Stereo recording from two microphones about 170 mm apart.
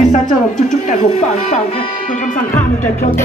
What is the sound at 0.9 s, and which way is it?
Speech, 45° left (ahead or behind).